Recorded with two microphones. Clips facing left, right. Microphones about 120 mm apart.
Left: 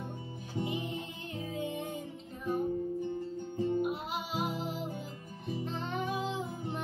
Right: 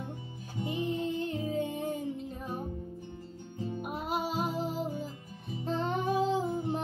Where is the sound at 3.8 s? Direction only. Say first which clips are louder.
Right 1 dB; 45° right (ahead or behind).